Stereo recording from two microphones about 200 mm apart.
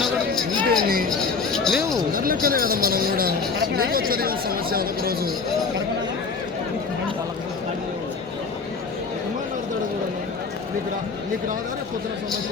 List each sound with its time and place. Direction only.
0.7 s chink: 45° right (ahead or behind)
1.5 s a sound: centre (ahead or behind)
2.1 s speech: 45° right (ahead or behind)